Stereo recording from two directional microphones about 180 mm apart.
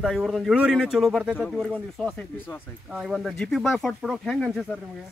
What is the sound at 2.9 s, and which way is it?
Speech, centre (ahead or behind).